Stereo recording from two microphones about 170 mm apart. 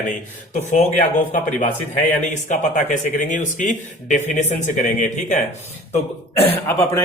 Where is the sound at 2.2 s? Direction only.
45° left (ahead or behind).